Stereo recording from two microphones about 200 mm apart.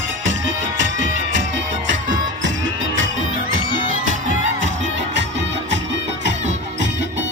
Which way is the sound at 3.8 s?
40° right (ahead or behind).